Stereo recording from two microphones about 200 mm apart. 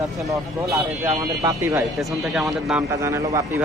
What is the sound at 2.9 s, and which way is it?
Speech, 15° right (ahead or behind).